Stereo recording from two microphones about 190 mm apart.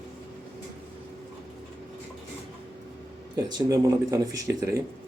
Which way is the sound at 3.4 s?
20° right (ahead or behind).